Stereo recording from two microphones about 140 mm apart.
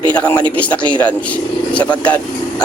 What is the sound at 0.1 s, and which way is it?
A man's voice, 10° left (ahead or behind).